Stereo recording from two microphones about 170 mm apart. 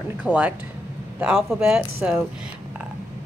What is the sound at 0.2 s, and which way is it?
A woman's voice, 10° right (ahead or behind).